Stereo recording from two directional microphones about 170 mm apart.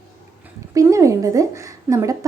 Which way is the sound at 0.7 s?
20° right (ahead or behind).